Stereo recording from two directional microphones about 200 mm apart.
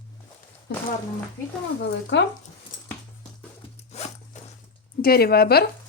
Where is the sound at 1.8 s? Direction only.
60° left (ahead or behind).